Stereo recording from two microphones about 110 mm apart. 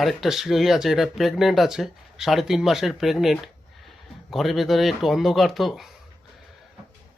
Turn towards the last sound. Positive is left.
turn(degrees=0)  # may be behind; listen again after turning